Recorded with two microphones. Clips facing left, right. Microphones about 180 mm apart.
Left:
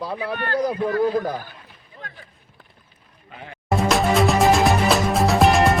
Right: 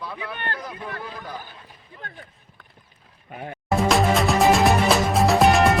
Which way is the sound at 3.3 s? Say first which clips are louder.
Right 5 dB; 45° right (ahead or behind).